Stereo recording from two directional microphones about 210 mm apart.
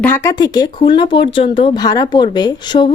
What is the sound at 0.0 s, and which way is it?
Speech, 10° left (ahead or behind).